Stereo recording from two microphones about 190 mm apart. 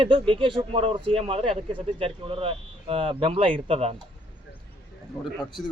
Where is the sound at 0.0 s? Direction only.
30° right (ahead or behind).